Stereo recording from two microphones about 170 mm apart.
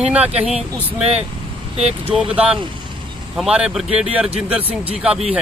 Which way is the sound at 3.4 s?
5° right (ahead or behind).